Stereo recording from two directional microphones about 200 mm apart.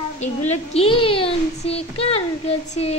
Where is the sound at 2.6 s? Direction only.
30° left (ahead or behind).